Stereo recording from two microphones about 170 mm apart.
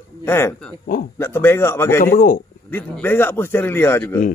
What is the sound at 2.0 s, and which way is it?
Speech, 55° left (ahead or behind).